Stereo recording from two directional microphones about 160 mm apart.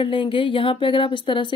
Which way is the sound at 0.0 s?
30° left (ahead or behind).